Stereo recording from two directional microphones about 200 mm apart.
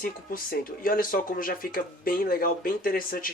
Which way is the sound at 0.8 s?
45° left (ahead or behind).